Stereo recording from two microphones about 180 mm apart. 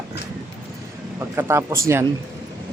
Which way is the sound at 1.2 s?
15° right (ahead or behind).